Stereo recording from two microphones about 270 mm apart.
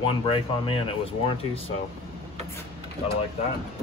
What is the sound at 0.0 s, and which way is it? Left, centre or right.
Speech, centre.